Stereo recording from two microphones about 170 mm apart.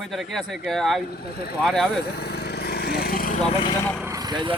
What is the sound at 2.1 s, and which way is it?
Lawn mower, 70° left (ahead or behind).